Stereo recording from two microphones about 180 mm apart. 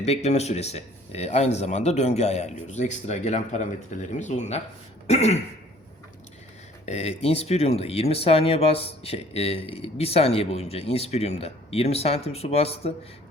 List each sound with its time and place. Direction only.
0.0 s speech: 35° left (ahead or behind)
6.8 s speech: 35° left (ahead or behind)